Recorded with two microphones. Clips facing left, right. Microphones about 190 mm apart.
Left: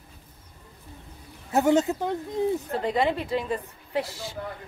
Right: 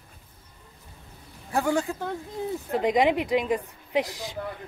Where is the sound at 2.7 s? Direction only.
15° right (ahead or behind).